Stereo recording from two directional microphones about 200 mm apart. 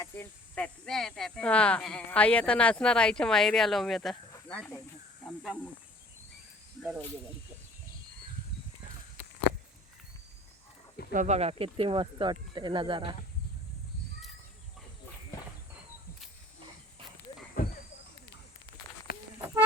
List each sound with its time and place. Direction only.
0.0 s speech: 10° left (ahead or behind)
11.1 s speech: 35° right (ahead or behind)
17.6 s a sound: 45° left (ahead or behind)